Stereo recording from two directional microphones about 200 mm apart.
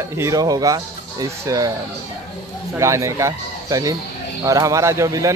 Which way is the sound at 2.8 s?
15° right (ahead or behind).